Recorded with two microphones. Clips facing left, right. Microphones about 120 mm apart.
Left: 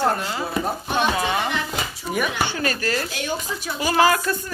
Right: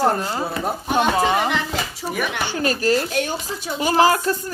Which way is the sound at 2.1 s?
Centre (ahead or behind).